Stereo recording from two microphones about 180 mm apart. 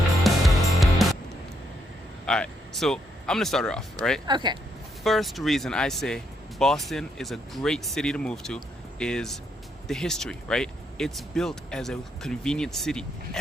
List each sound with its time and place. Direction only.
0.2 s music: centre (ahead or behind)
2.2 s speech: 5° left (ahead or behind)
4.3 s speech: 25° right (ahead or behind)
5.0 s speech: centre (ahead or behind)